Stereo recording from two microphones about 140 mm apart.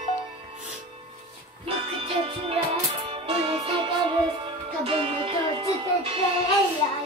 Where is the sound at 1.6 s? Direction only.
40° right (ahead or behind).